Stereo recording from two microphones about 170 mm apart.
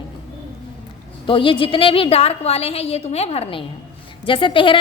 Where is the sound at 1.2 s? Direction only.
30° left (ahead or behind).